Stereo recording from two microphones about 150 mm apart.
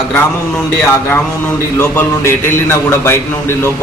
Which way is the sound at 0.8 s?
15° left (ahead or behind).